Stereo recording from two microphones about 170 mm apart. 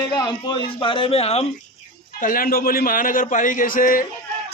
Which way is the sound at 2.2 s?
55° left (ahead or behind).